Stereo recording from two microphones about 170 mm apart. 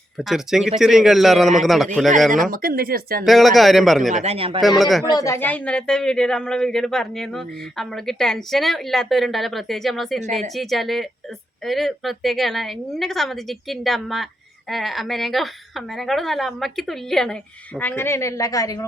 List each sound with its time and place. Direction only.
0.2 s speech: centre (ahead or behind)
2.3 s speech: 55° right (ahead or behind)
3.2 s speech: centre (ahead or behind)
4.1 s speech: 40° right (ahead or behind)
4.6 s speech: centre (ahead or behind)
5.1 s speech: 15° left (ahead or behind)